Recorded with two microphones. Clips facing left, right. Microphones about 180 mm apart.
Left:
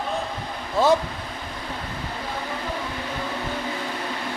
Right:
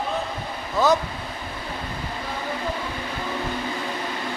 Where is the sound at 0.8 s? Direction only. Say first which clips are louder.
Left 1 dB; 30° left (ahead or behind).